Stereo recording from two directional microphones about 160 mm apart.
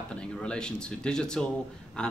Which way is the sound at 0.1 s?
5° left (ahead or behind).